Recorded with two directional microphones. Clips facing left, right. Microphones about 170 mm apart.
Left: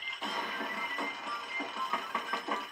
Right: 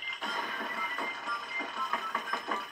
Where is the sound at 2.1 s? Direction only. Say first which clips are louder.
Even; 10° left (ahead or behind).